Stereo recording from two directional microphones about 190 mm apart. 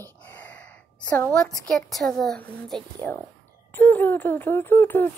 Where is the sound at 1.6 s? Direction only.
Centre (ahead or behind).